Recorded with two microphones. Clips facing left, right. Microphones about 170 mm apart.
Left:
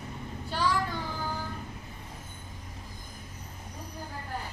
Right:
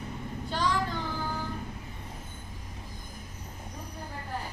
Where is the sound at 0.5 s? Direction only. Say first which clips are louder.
Even; 10° left (ahead or behind).